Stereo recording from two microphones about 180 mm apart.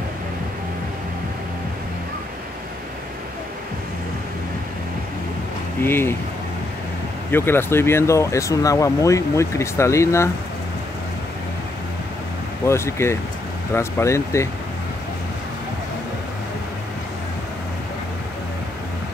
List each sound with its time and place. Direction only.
5.8 s speech: 10° left (ahead or behind)
7.2 s speech: 10° left (ahead or behind)
12.6 s speech: 15° left (ahead or behind)